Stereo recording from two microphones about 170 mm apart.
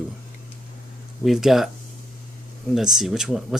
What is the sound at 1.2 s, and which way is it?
Speech, centre (ahead or behind).